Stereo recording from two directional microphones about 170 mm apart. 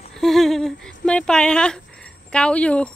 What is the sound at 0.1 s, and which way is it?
Speech, centre (ahead or behind).